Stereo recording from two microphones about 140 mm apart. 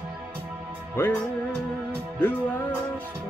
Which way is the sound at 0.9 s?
15° left (ahead or behind).